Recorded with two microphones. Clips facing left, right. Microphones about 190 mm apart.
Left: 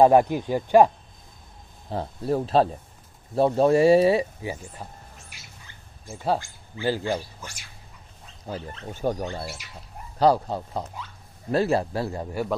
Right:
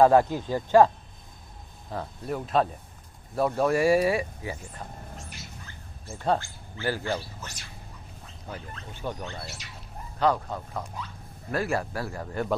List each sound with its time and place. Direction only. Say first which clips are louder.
0.0 s speech: left 2 dB; 15° left (ahead or behind)
1.9 s speech: left 6 dB; 30° left (ahead or behind)
6.0 s speech: left 1 dB; 5° left (ahead or behind)
6.8 s speech: left 4 dB; 20° left (ahead or behind)
8.5 s speech: left 6 dB; 35° left (ahead or behind)
10.1 s speech: left 5 dB; 35° left (ahead or behind)